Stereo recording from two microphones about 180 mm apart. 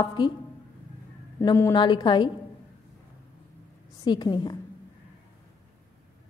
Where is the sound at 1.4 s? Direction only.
20° left (ahead or behind).